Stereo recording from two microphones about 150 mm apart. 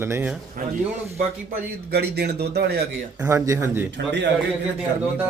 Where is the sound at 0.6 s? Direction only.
65° right (ahead or behind).